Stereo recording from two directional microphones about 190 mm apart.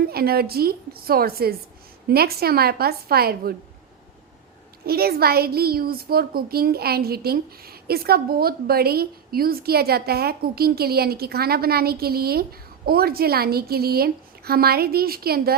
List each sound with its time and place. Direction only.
0.1 s speech: 55° right (ahead or behind)
4.9 s speech: 55° right (ahead or behind)